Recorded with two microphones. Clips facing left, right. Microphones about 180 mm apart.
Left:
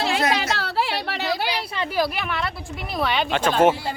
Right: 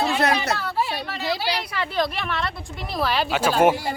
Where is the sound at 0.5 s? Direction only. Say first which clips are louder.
Left 1 dB; 75° left (ahead or behind).